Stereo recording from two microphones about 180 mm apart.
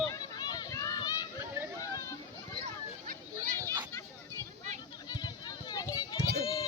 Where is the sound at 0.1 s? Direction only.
20° left (ahead or behind).